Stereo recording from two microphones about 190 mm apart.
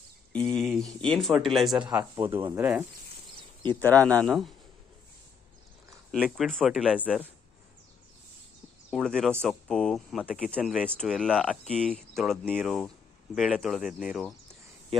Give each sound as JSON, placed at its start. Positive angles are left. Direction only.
{"t": 0.3, "sound": "speech", "side_deg": 5}
{"t": 1.8, "sound": "speech", "side_deg": -20}
{"t": 2.5, "sound": "cricket", "side_deg": -10}
{"t": 3.8, "sound": "speech", "side_deg": 10}
{"t": 6.1, "sound": "speech", "side_deg": -5}
{"t": 8.9, "sound": "speech", "side_deg": 0}